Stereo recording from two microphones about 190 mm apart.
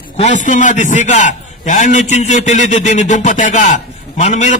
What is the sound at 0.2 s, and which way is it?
A man's voice, 40° left (ahead or behind).